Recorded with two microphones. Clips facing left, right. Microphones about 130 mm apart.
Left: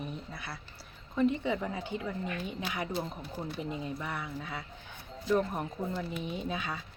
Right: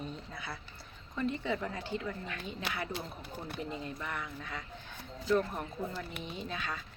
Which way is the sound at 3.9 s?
10° left (ahead or behind).